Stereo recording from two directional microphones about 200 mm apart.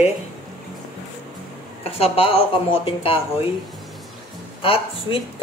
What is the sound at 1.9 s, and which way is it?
Speech, 30° left (ahead or behind).